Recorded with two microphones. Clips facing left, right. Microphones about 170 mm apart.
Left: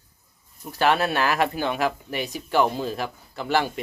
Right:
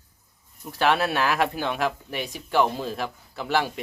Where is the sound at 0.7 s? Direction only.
Centre (ahead or behind).